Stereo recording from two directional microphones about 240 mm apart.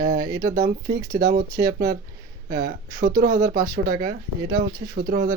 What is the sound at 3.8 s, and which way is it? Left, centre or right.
Speech, right.